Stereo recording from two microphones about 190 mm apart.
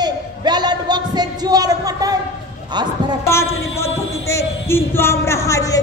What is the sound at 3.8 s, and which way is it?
Speech, 15° left (ahead or behind).